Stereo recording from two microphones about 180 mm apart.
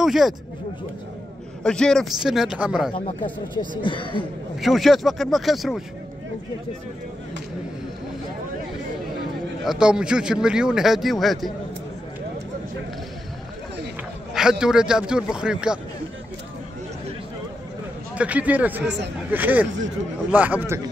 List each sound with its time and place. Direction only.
0.0 s speech: centre (ahead or behind)
1.6 s a man's voice: 5° left (ahead or behind)
2.9 s speech: 30° left (ahead or behind)
4.6 s a man's voice: centre (ahead or behind)
9.7 s a man's voice: 5° right (ahead or behind)
14.3 s a man's voice: 5° right (ahead or behind)
18.1 s a man's voice: 5° right (ahead or behind)